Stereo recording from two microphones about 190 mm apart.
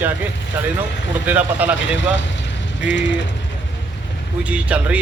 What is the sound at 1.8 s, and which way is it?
Speech, 75° left (ahead or behind).